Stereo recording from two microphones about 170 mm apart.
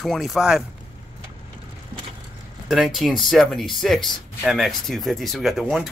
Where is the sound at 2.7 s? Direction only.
Centre (ahead or behind).